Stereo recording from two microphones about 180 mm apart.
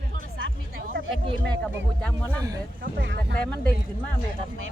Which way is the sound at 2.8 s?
50° right (ahead or behind).